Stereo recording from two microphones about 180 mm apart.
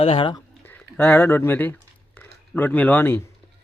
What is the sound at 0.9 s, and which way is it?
A man's voice, 10° left (ahead or behind).